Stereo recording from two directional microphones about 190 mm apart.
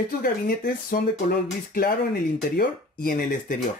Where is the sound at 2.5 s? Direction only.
50° left (ahead or behind).